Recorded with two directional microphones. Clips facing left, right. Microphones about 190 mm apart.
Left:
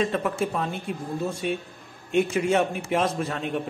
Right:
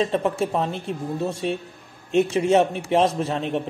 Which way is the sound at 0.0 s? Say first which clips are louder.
Right 3 dB; 30° right (ahead or behind).